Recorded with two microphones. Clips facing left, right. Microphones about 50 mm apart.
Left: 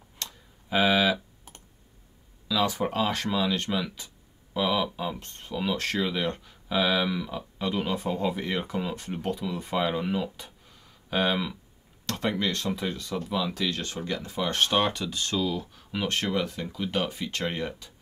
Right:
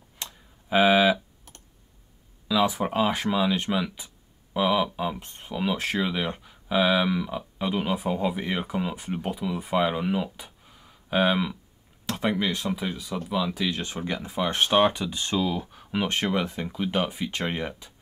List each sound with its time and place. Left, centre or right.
0.2 s a sound: centre
2.4 s speech: centre
13.7 s speech: centre